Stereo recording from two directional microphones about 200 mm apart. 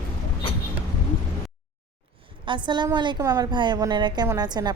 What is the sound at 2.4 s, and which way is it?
A woman's voice, 25° right (ahead or behind).